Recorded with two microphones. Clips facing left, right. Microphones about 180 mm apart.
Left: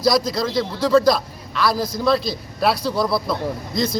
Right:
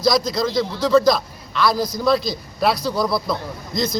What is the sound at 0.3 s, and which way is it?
A man's voice, 5° left (ahead or behind).